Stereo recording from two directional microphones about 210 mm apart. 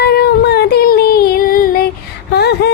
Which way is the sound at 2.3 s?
50° left (ahead or behind).